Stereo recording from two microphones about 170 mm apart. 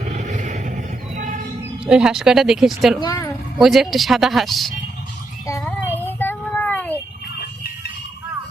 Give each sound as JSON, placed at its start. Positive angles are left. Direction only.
{"t": 0.1, "sound": "vehicle", "side_deg": -45}
{"t": 1.1, "sound": "a sound", "side_deg": -45}
{"t": 1.8, "sound": "speech", "side_deg": -5}
{"t": 3.0, "sound": "a woman's voice", "side_deg": 20}
{"t": 3.6, "sound": "speech", "side_deg": 0}
{"t": 5.6, "sound": "music", "side_deg": 10}